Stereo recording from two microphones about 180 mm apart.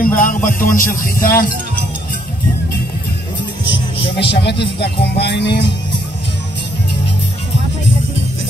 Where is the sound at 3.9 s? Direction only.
70° left (ahead or behind).